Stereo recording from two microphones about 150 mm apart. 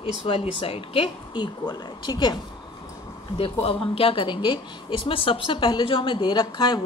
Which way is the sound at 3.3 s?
40° left (ahead or behind).